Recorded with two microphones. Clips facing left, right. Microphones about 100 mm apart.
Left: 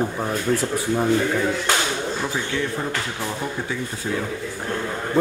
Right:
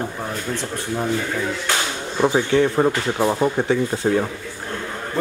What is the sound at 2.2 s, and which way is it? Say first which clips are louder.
Speech: right 8 dB; 50° right (ahead or behind).